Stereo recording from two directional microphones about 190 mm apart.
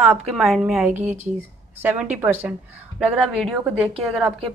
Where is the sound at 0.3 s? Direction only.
Centre (ahead or behind).